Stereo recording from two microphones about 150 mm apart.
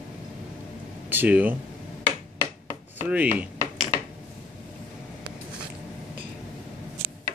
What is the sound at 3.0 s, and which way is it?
Speech, 10° right (ahead or behind).